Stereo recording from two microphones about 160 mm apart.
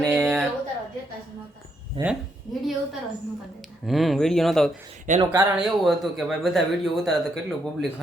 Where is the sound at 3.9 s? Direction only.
Centre (ahead or behind).